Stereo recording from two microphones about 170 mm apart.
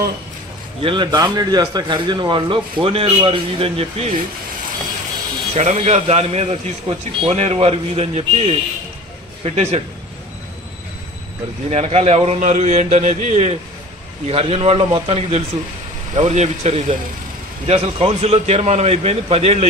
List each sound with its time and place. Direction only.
0.8 s speech: 25° right (ahead or behind)
5.5 s a man's voice: 40° right (ahead or behind)
11.7 s a man's voice: 40° right (ahead or behind)